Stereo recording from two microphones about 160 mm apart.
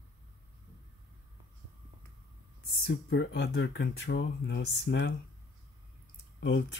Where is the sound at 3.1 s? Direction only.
90° left.